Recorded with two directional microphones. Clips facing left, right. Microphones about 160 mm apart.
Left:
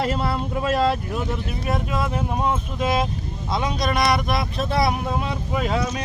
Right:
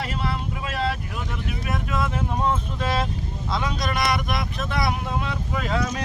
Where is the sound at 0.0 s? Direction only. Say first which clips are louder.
Left 5 dB; 40° left (ahead or behind).